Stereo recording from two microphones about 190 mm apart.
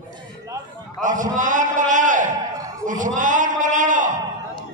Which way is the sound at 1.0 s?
45° right (ahead or behind).